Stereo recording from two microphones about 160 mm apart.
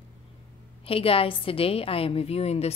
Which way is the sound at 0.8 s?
35° left (ahead or behind).